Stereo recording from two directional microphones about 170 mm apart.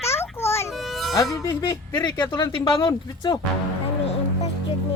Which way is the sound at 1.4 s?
20° left (ahead or behind).